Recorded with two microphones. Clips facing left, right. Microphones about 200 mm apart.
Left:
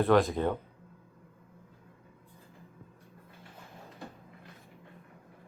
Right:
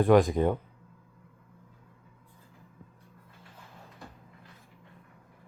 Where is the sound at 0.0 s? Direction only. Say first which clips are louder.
Right 3 dB; 15° right (ahead or behind).